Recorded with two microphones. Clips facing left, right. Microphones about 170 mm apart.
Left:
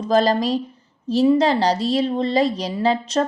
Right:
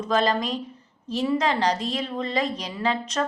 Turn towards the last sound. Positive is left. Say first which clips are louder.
# left 7 dB
turn(degrees=30)  # may be behind; listen again after turning